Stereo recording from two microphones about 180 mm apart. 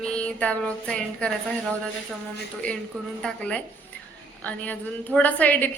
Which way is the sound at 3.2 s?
5° left (ahead or behind).